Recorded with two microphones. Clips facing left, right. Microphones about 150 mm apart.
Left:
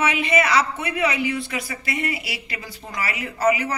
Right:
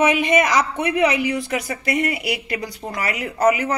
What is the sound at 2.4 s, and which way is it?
Speech, 55° right (ahead or behind).